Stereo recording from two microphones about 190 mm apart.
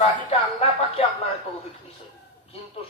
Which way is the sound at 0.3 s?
30° left (ahead or behind).